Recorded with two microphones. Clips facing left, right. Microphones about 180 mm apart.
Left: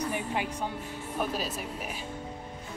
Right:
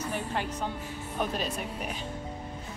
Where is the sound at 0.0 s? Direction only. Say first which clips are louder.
Left 1 dB; 10° left (ahead or behind).